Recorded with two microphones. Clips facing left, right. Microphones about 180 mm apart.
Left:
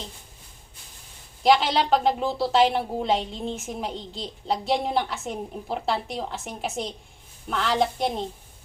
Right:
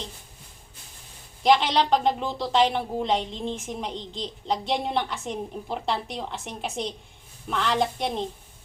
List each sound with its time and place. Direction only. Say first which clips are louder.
1.5 s a woman's voice: even; centre (ahead or behind)